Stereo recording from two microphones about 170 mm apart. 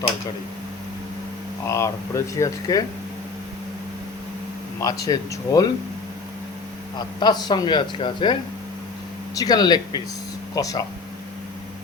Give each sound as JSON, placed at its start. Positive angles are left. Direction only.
{"t": 1.6, "sound": "speech", "side_deg": 15}
{"t": 4.8, "sound": "speech", "side_deg": 20}
{"t": 7.2, "sound": "speech", "side_deg": 25}